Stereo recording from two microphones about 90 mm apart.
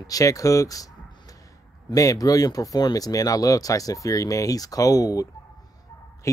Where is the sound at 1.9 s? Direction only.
40° left (ahead or behind).